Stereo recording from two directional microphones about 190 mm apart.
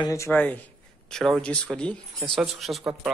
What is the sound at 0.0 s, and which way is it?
A man's voice, 15° left (ahead or behind).